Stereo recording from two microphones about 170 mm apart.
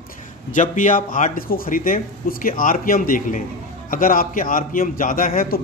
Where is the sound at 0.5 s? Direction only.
50° left (ahead or behind).